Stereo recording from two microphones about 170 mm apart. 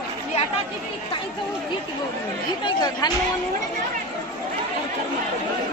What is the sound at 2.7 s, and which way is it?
Speech, 25° left (ahead or behind).